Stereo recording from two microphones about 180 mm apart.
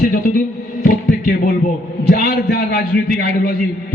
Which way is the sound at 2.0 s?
55° left (ahead or behind).